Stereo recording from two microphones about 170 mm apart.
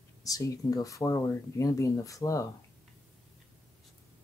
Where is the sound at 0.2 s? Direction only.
20° left (ahead or behind).